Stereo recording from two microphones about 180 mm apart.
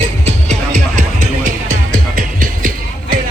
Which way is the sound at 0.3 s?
40° right (ahead or behind).